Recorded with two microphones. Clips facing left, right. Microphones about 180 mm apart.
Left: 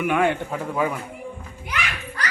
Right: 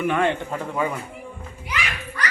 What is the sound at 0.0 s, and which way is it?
Speech, 10° left (ahead or behind).